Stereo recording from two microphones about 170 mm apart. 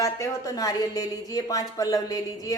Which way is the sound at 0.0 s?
20° left (ahead or behind).